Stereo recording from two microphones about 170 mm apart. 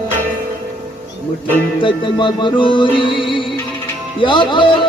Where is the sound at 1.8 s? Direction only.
30° left (ahead or behind).